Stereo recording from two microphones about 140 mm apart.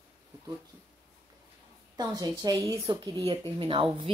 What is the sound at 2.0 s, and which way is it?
A woman's voice, 25° right (ahead or behind).